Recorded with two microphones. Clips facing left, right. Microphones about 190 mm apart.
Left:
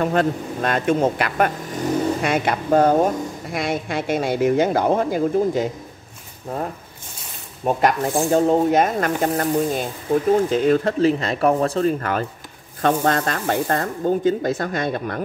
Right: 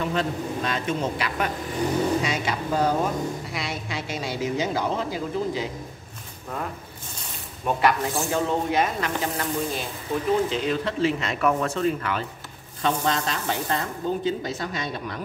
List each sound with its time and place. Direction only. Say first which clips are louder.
0.0 s speech: left 6 dB; 50° left (ahead or behind)
7.6 s speech: left 4 dB; 45° left (ahead or behind)